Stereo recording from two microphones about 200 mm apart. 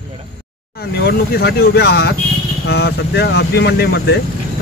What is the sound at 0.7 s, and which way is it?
Speech, 55° left (ahead or behind).